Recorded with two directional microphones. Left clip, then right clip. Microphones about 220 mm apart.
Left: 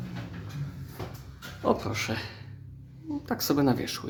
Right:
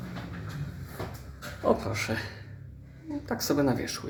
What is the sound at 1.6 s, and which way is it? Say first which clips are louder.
Speech: right 1 dB; 15° left (ahead or behind).